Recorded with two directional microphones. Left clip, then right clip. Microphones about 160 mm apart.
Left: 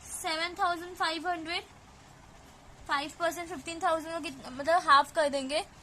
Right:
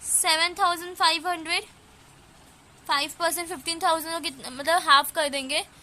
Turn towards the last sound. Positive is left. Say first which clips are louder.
# right 3 dB
turn(degrees=-10)  # may be behind; listen again after turning